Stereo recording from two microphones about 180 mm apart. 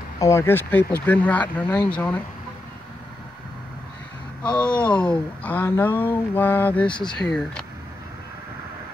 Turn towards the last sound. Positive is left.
turn(degrees=25)  # may be behind; listen again after turning